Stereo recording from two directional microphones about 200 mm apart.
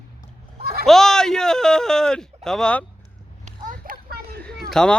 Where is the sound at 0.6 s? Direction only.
50° right (ahead or behind).